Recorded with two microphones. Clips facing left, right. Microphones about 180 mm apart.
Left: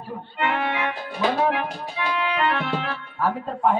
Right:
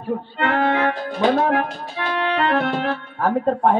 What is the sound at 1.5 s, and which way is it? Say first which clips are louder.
A man's voice: right 5 dB; 45° right (ahead or behind).